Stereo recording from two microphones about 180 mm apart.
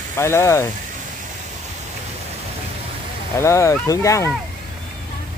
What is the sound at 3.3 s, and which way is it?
Speech, 15° left (ahead or behind).